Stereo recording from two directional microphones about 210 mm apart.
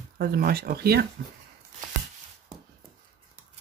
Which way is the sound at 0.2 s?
45° right (ahead or behind).